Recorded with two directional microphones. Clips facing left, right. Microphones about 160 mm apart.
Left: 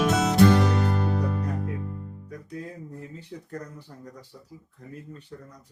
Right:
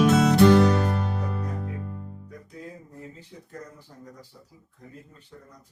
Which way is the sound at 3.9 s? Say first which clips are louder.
Left 2 dB; 65° left (ahead or behind).